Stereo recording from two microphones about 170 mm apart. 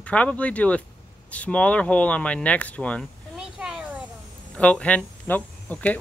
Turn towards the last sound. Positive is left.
turn(degrees=10)  # may be behind; listen again after turning